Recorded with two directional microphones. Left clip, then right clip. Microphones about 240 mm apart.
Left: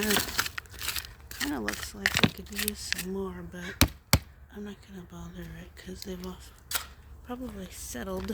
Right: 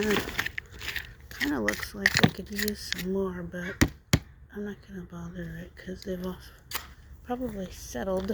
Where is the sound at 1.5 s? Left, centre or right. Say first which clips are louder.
Right 4 dB; centre.